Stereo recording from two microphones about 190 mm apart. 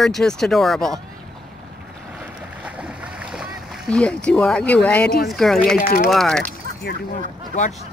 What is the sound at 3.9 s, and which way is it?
Speech, 5° left (ahead or behind).